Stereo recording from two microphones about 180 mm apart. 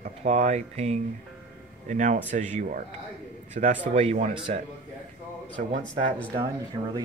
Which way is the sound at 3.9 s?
40° right (ahead or behind).